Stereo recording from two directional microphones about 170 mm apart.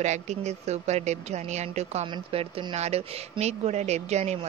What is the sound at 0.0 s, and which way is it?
Speech, 45° right (ahead or behind).